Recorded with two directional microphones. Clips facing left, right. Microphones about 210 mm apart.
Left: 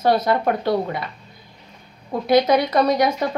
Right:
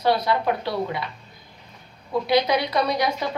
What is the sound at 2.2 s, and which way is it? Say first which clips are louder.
A woman's voice: left 6 dB; 45° left (ahead or behind).